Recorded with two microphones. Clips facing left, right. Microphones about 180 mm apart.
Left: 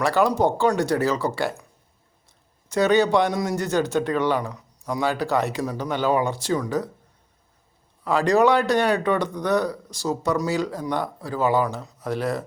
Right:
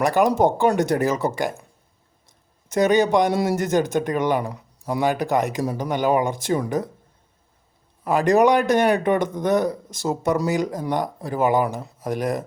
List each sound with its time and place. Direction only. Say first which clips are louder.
0.0 s a man's voice: right 2 dB; 15° right (ahead or behind)
2.2 s a sound: right 1 dB; 20° right (ahead or behind)
3.3 s speech: right 3 dB; 20° right (ahead or behind)
8.0 s a man's voice: right 2 dB; 15° right (ahead or behind)